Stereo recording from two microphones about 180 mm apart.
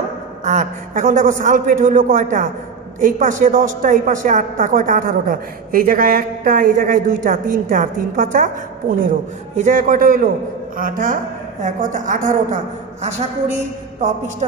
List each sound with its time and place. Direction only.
0.5 s a woman's voice: 45° right (ahead or behind)